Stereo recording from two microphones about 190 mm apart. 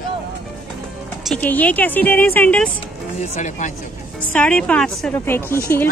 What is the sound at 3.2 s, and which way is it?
Speech, 40° left (ahead or behind).